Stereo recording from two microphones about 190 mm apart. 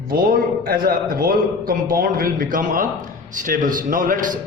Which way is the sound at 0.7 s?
50° right (ahead or behind).